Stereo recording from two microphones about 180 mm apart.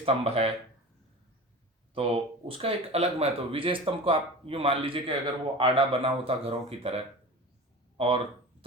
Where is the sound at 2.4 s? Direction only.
35° right (ahead or behind).